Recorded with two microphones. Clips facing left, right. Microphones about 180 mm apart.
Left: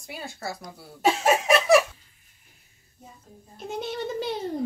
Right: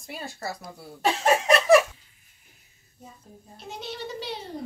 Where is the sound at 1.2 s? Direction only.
5° left (ahead or behind).